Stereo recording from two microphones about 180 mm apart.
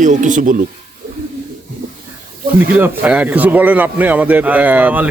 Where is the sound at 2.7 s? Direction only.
10° right (ahead or behind).